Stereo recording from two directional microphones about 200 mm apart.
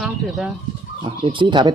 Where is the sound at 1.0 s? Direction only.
25° right (ahead or behind).